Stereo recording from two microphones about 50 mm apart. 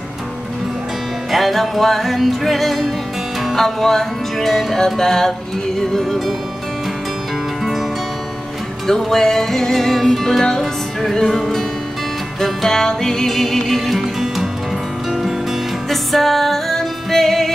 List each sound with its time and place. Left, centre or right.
1.3 s music: centre
8.8 s music: centre
15.9 s music: centre